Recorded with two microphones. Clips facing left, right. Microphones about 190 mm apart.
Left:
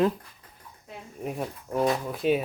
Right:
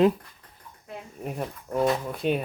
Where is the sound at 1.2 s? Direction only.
Centre (ahead or behind).